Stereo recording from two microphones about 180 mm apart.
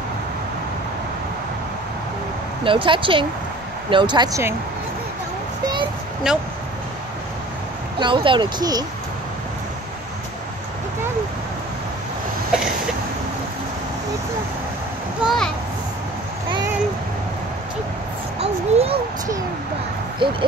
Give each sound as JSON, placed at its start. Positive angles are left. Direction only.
{"t": 2.6, "sound": "speech", "side_deg": -30}
{"t": 6.3, "sound": "speech", "side_deg": -5}
{"t": 8.0, "sound": "speech", "side_deg": -30}
{"t": 15.2, "sound": "a sound", "side_deg": 5}
{"t": 18.4, "sound": "a sound", "side_deg": -35}
{"t": 20.2, "sound": "owl", "side_deg": -25}